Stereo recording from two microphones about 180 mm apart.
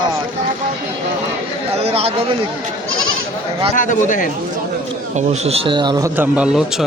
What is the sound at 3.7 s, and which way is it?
Speech, 45° left (ahead or behind).